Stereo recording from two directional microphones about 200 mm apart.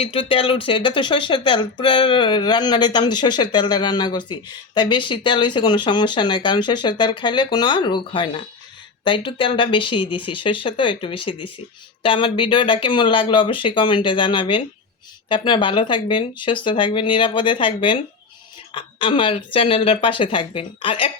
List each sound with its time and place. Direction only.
0.0 s speech: 25° left (ahead or behind)